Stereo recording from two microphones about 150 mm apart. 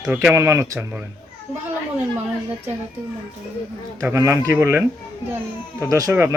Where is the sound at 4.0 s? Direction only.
15° right (ahead or behind).